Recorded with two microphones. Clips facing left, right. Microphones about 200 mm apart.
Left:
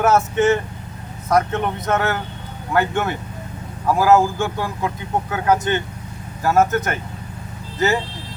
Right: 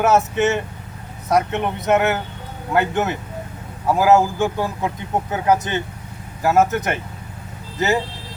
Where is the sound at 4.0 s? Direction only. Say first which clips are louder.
Even; 20° right (ahead or behind).